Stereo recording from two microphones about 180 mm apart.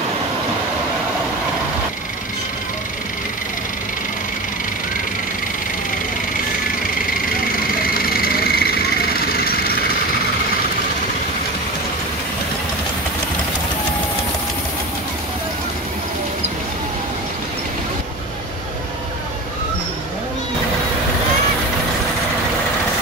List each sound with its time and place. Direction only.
7.5 s vehicle: 55° left (ahead or behind)